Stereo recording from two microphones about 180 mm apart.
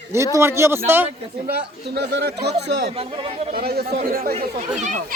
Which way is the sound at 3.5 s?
60° right (ahead or behind).